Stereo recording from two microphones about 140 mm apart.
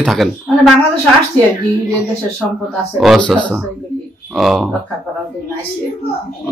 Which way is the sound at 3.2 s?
5° left (ahead or behind).